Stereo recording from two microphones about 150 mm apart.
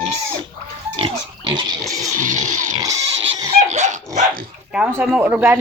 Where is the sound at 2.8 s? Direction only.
25° right (ahead or behind).